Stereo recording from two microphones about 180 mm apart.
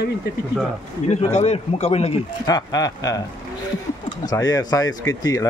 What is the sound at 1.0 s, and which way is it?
Speech, 40° left (ahead or behind).